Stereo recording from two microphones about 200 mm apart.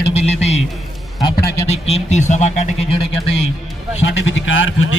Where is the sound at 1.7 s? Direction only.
30° left (ahead or behind).